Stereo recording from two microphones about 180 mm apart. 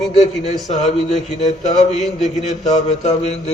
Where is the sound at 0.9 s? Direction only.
40° left (ahead or behind).